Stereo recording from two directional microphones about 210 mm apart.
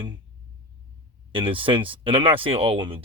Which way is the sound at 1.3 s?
25° right (ahead or behind).